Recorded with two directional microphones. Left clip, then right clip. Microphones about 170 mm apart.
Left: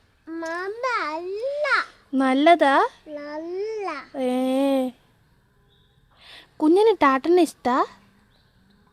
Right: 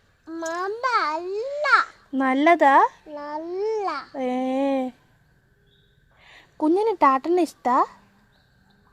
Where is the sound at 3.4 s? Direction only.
5° left (ahead or behind).